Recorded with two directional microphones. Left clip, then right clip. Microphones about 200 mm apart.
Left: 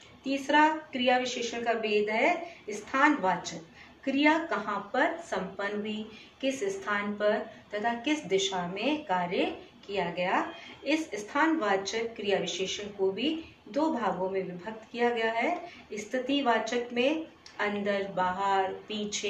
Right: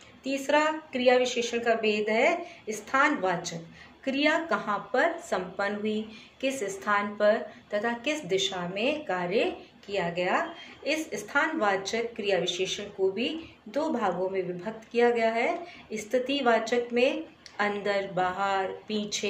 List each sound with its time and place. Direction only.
0.2 s a woman's voice: 60° right (ahead or behind)
6.4 s a woman's voice: 55° right (ahead or behind)